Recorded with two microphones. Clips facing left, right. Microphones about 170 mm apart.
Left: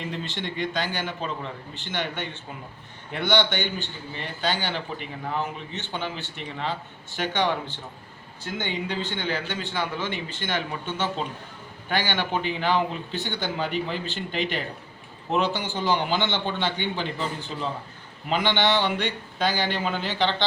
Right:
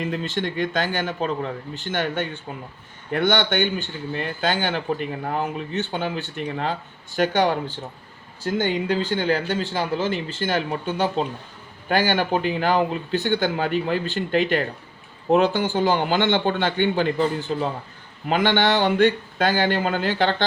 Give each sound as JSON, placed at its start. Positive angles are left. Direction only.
{"t": 0.0, "sound": "speech", "side_deg": -45}
{"t": 10.4, "sound": "speech", "side_deg": -45}